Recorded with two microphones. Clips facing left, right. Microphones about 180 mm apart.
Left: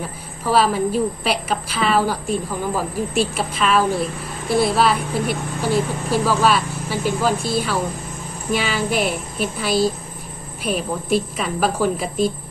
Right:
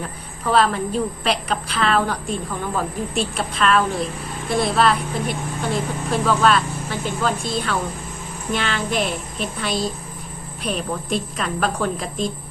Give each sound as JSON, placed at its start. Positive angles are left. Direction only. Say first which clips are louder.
{"t": 0.0, "sound": "a woman's voice", "louder": "left 1 dB", "side_deg": 5}